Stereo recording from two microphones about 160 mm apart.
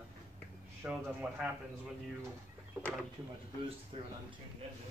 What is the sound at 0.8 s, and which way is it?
Speech, 5° right (ahead or behind).